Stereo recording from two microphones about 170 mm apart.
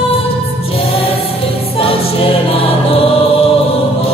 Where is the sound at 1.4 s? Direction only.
35° left (ahead or behind).